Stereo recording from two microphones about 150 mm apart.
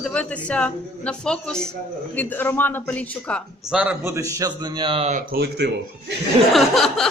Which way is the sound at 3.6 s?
5° right (ahead or behind).